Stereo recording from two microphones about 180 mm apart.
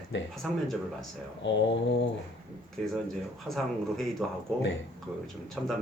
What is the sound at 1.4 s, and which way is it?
Speech, 90° left.